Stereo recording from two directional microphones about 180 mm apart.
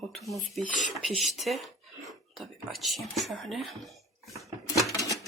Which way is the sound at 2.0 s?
Centre (ahead or behind).